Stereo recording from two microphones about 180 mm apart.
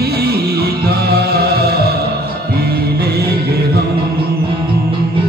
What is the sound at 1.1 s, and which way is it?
Music, 60° right (ahead or behind).